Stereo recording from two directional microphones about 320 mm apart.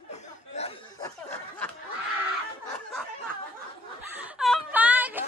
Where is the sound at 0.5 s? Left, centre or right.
Centre.